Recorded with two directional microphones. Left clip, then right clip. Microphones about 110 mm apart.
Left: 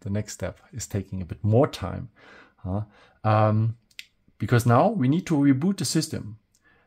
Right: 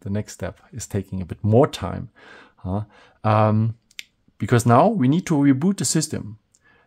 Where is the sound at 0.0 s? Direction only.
25° right (ahead or behind).